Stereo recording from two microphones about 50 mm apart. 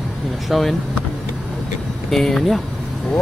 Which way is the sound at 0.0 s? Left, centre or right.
Centre.